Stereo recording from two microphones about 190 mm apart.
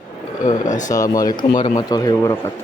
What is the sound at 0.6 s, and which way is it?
Speech, 40° left (ahead or behind).